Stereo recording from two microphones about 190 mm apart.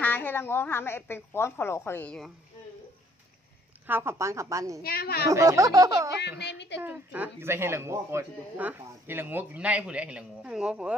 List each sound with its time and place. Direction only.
0.0 s a woman's voice: 10° left (ahead or behind)
3.8 s speech: 10° right (ahead or behind)
4.8 s a woman's voice: 55° left (ahead or behind)
5.3 s speech: 15° right (ahead or behind)
6.4 s a woman's voice: 65° left (ahead or behind)
6.8 s speech: 10° right (ahead or behind)